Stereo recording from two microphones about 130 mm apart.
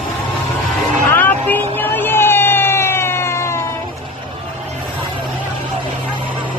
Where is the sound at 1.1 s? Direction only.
15° left (ahead or behind).